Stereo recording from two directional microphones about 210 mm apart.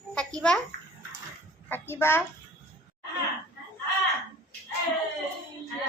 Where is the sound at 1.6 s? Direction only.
10° left (ahead or behind).